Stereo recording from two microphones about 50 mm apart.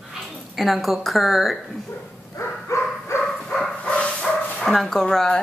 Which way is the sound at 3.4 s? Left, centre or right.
Centre.